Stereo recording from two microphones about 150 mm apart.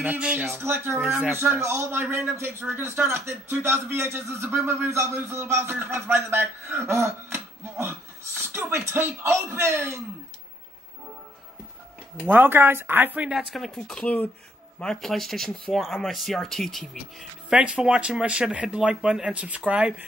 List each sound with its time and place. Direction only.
0.0 s speech: 10° right (ahead or behind)
12.3 s speech: 15° right (ahead or behind)